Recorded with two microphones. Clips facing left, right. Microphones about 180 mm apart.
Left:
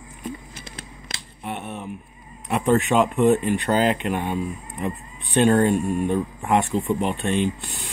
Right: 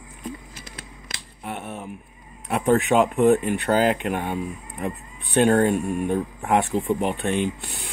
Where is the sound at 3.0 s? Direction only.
15° right (ahead or behind).